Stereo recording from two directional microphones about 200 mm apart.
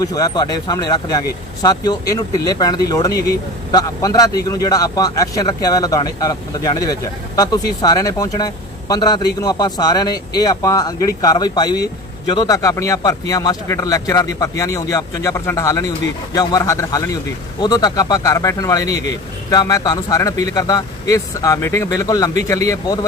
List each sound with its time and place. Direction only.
0.0 s a man's voice: 20° left (ahead or behind)